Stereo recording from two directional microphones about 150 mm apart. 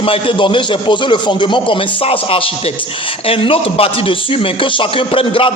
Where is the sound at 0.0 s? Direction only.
35° left (ahead or behind).